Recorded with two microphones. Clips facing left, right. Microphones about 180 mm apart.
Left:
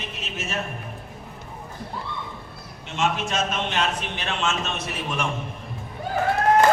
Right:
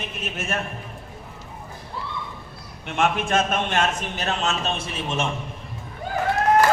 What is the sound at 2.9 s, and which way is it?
Speech, 55° right (ahead or behind).